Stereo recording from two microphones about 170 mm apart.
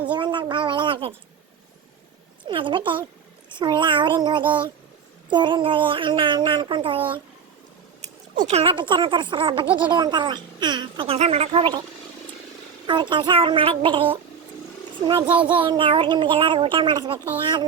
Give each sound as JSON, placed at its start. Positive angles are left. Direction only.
{"t": 0.1, "sound": "a sound", "side_deg": -25}
{"t": 2.4, "sound": "speech", "side_deg": -30}
{"t": 8.0, "sound": "speech", "side_deg": -40}
{"t": 12.9, "sound": "speech", "side_deg": -30}